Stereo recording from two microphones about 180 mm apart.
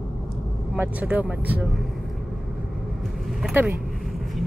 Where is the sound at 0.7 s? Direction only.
10° right (ahead or behind).